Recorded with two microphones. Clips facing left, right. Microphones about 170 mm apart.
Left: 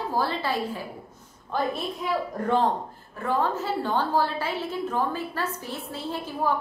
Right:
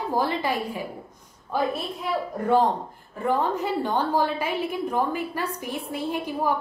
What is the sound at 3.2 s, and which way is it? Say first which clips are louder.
A woman's voice: right 2 dB; 15° right (ahead or behind).